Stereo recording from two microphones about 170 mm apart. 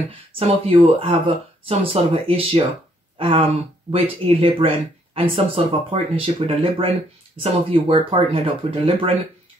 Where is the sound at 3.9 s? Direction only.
35° right (ahead or behind).